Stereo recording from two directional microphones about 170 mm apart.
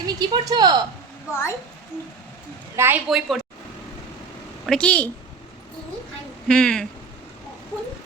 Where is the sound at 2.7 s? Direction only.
15° right (ahead or behind).